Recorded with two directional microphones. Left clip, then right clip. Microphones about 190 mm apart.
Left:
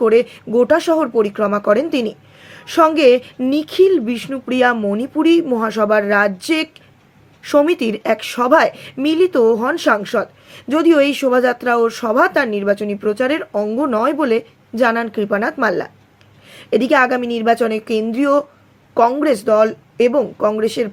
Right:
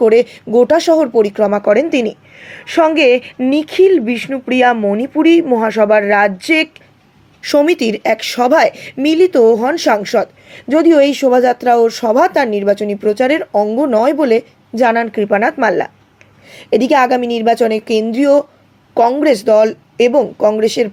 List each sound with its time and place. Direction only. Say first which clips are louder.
0.0 s a woman's voice: right 3 dB; 15° right (ahead or behind)